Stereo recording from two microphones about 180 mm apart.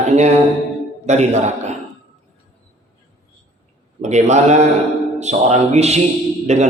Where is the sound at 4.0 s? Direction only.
40° right (ahead or behind).